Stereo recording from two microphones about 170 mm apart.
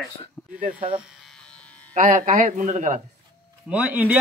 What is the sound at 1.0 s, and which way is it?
Electric shaver, centre (ahead or behind).